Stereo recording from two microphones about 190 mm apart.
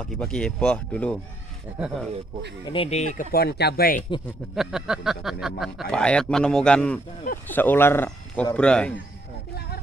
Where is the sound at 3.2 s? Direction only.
55° left (ahead or behind).